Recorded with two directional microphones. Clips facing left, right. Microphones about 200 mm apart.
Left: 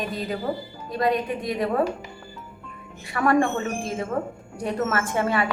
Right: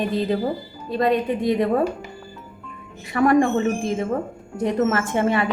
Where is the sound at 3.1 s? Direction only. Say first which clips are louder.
Right 4 dB; 20° right (ahead or behind).